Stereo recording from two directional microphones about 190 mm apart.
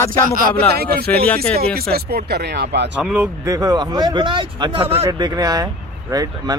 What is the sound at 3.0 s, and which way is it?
Speech, 10° right (ahead or behind).